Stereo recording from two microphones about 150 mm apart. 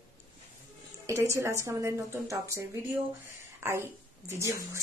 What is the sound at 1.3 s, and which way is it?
A woman's voice, 20° right (ahead or behind).